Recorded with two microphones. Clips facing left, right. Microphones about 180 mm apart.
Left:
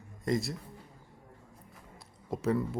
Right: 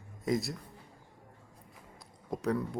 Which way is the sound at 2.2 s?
Centre (ahead or behind).